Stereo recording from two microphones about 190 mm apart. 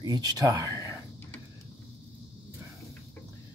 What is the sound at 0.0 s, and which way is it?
Speech, 20° right (ahead or behind).